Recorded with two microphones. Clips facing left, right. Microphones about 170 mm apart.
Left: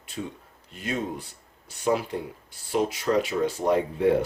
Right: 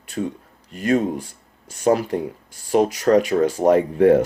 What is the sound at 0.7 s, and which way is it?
Speech, 50° right (ahead or behind).